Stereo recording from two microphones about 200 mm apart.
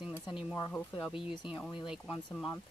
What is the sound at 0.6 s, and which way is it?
Speech, 15° left (ahead or behind).